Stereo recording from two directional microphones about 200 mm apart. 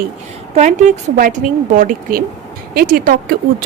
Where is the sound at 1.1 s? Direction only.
40° right (ahead or behind).